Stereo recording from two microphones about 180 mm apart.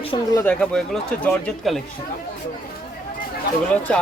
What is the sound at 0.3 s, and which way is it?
Speech, 5° left (ahead or behind).